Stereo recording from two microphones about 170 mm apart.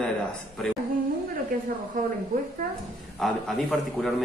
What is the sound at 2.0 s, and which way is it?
Speech, 50° right (ahead or behind).